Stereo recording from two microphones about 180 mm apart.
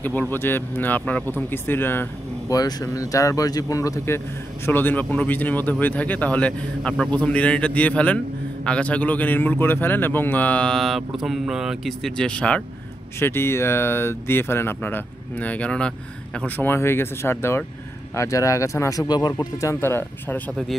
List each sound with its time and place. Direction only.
0.0 s a man's voice: 10° left (ahead or behind)